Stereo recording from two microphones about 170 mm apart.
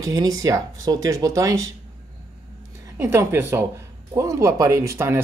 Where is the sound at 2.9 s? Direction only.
15° right (ahead or behind).